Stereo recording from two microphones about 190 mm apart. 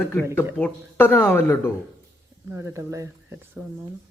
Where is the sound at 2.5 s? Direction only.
15° right (ahead or behind).